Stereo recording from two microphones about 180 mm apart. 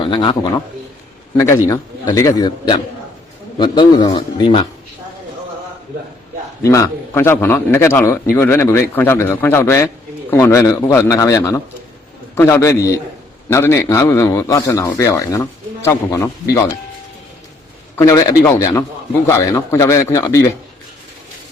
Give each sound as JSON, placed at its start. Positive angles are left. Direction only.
{"t": 0.0, "sound": "a man's voice", "side_deg": 25}
{"t": 1.4, "sound": "a man's voice", "side_deg": 15}
{"t": 6.6, "sound": "a man's voice", "side_deg": 20}
{"t": 17.9, "sound": "a man's voice", "side_deg": 20}